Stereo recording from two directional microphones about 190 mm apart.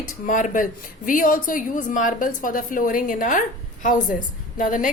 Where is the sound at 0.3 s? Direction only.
45° left (ahead or behind).